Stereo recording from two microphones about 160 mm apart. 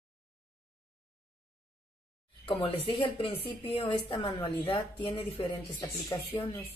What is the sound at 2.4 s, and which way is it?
Speech, 35° left (ahead or behind).